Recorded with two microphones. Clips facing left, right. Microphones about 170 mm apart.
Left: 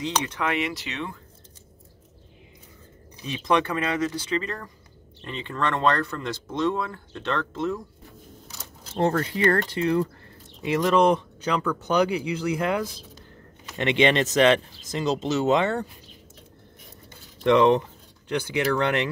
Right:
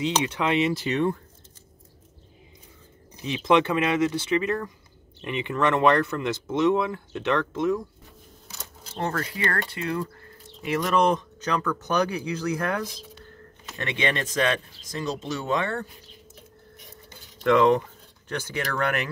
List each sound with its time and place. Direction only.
0.0 s speech: 15° right (ahead or behind)
3.4 s speech: 20° right (ahead or behind)
8.9 s speech: 25° left (ahead or behind)
10.6 s speech: 15° left (ahead or behind)
17.4 s speech: 20° left (ahead or behind)